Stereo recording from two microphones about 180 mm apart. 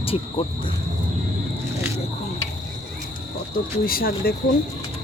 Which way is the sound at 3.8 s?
55° left (ahead or behind).